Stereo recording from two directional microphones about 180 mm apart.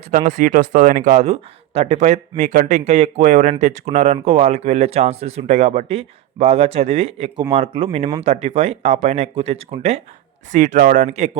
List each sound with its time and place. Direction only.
0.1 s speech: 40° right (ahead or behind)